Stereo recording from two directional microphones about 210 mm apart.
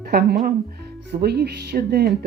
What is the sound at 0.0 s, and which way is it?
Speech, 50° right (ahead or behind).